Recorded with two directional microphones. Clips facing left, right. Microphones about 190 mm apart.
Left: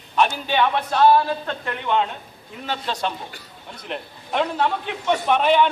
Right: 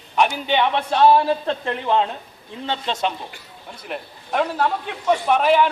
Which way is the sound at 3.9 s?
5° right (ahead or behind).